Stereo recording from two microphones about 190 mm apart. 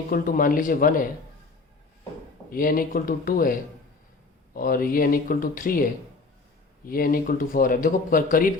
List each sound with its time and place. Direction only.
0.1 s speech: 50° left (ahead or behind)
2.5 s speech: 50° left (ahead or behind)